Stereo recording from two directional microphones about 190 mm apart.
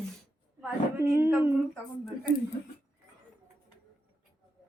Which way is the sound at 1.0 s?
15° right (ahead or behind).